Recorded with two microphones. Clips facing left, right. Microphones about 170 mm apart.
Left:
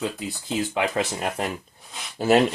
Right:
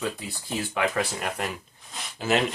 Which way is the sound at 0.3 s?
20° left (ahead or behind).